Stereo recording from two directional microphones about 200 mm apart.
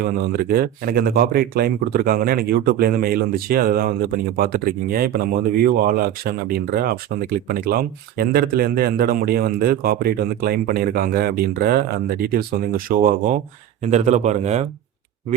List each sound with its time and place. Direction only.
0.0 s speech: 50° right (ahead or behind); by 14.7 s 35° right (ahead or behind)